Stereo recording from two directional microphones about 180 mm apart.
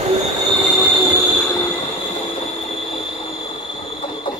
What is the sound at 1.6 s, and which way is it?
Train, 30° left (ahead or behind).